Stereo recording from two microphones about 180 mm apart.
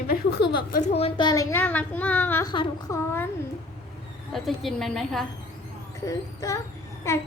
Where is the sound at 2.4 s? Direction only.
25° left (ahead or behind).